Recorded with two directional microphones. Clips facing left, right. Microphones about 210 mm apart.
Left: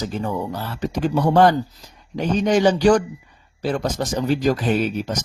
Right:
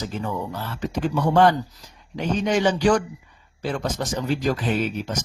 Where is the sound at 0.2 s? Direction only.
35° left (ahead or behind).